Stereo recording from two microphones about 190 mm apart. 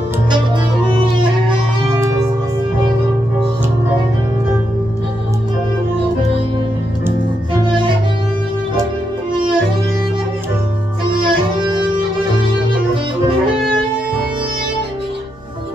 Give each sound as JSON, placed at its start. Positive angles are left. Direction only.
{"t": 11.1, "sound": "music", "side_deg": -25}